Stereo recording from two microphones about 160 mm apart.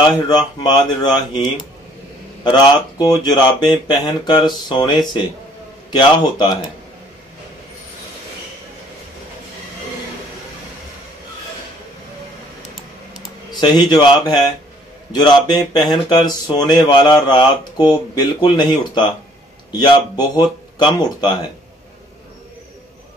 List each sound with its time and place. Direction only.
0.3 s speech: 25° left (ahead or behind)
13.6 s speech: 25° left (ahead or behind)